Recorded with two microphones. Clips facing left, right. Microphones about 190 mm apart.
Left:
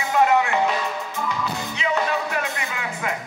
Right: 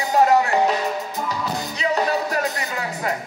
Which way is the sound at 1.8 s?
40° right (ahead or behind).